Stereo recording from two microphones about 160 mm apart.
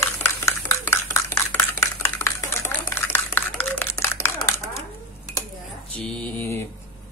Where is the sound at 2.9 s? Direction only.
15° left (ahead or behind).